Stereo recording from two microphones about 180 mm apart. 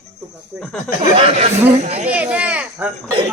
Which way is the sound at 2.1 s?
5° right (ahead or behind).